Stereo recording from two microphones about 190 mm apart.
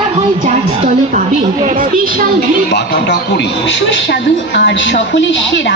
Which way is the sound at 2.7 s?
60° left (ahead or behind).